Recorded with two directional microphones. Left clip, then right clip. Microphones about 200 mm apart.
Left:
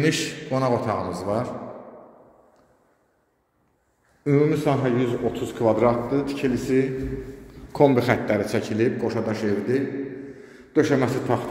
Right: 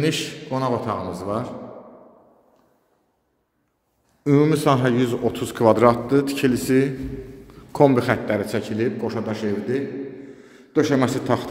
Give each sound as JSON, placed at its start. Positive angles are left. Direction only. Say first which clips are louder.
{"t": 0.0, "sound": "a man's voice", "louder": "even", "side_deg": -5}
{"t": 4.2, "sound": "a man's voice", "louder": "right 2 dB", "side_deg": -25}
{"t": 7.7, "sound": "a man's voice", "louder": "right 1 dB", "side_deg": -20}